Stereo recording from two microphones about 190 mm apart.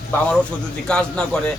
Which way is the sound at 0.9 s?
5° left (ahead or behind).